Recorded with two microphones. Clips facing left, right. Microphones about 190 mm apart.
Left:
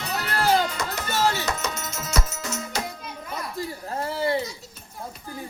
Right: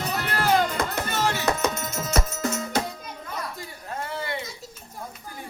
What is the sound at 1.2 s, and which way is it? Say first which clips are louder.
Music: left 3 dB; 30° left (ahead or behind).